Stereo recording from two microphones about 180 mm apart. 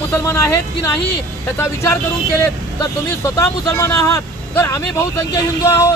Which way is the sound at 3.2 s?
20° left (ahead or behind).